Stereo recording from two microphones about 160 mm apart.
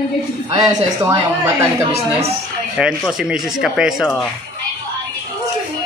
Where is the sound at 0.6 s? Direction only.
20° right (ahead or behind).